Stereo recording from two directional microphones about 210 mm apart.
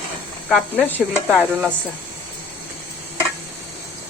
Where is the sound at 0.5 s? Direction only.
10° left (ahead or behind).